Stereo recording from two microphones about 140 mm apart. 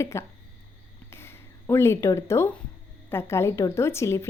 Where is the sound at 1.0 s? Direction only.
15° left (ahead or behind).